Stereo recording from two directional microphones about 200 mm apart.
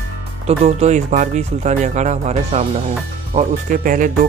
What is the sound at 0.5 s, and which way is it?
Speech, 35° right (ahead or behind).